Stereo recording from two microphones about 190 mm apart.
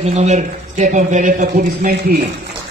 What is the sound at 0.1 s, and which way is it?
A man's voice, 35° right (ahead or behind).